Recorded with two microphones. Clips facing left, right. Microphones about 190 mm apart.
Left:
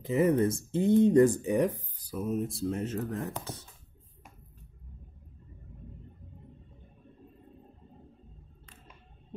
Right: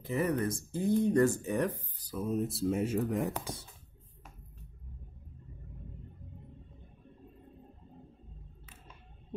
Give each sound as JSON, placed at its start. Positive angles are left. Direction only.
{"t": 0.0, "sound": "speech", "side_deg": 20}